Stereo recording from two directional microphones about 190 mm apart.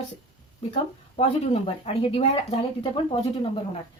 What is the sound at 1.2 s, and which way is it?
Speech, 30° left (ahead or behind).